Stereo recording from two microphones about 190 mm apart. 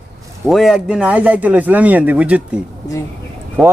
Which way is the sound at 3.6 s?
Centre (ahead or behind).